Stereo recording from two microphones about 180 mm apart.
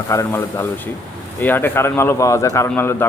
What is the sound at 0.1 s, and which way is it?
A man's voice, 15° left (ahead or behind).